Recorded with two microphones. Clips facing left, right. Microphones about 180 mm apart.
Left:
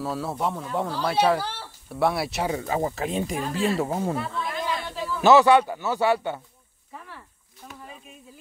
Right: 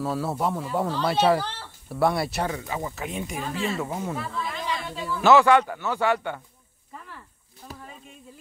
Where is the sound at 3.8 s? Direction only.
35° left (ahead or behind).